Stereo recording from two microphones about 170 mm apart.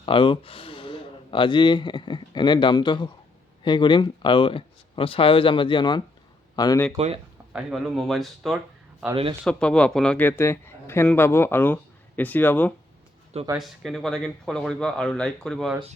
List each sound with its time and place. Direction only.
0.0 s speech: 30° left (ahead or behind)
6.9 s speech: 35° right (ahead or behind)
7.5 s a man's voice: centre (ahead or behind)
13.6 s speech: centre (ahead or behind)